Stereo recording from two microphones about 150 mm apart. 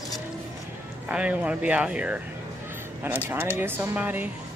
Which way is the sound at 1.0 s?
10° right (ahead or behind).